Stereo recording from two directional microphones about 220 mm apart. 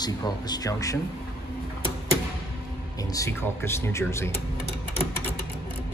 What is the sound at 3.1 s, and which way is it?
A man's voice, 15° left (ahead or behind).